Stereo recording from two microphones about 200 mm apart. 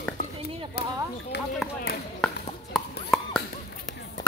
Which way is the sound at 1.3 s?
55° left (ahead or behind).